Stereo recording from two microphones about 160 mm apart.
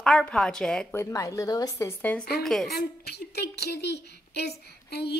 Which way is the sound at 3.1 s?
90° left.